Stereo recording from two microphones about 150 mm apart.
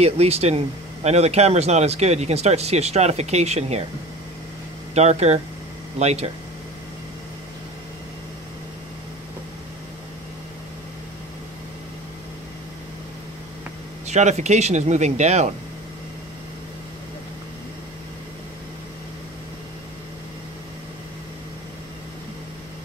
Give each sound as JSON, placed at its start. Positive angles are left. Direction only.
{"t": 0.0, "sound": "speech", "side_deg": -45}
{"t": 4.9, "sound": "speech", "side_deg": -45}
{"t": 14.0, "sound": "speech", "side_deg": -50}